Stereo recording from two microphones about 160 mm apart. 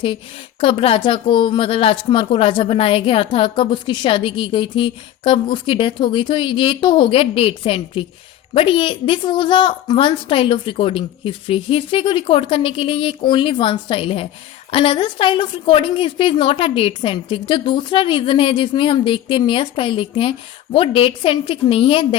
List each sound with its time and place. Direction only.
0.6 s a woman's voice: 35° left (ahead or behind)